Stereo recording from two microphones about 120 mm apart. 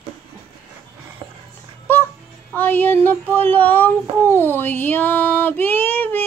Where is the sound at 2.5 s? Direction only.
15° left (ahead or behind).